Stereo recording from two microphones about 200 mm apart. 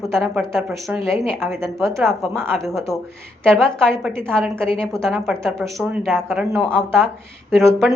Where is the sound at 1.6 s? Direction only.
15° right (ahead or behind).